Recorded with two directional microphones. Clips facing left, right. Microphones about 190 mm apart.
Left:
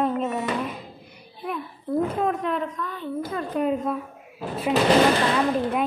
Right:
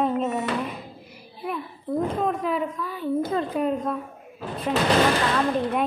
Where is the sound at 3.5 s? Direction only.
Centre (ahead or behind).